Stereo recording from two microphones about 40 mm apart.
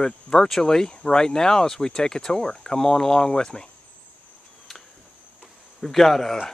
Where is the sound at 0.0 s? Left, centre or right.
Centre.